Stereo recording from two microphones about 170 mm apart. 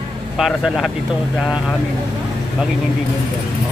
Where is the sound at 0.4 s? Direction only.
Centre (ahead or behind).